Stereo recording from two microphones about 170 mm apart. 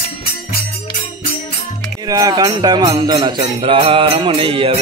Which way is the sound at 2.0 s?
20° right (ahead or behind).